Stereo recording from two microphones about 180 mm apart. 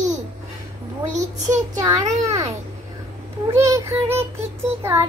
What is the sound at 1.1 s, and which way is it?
A child's voice, 40° right (ahead or behind).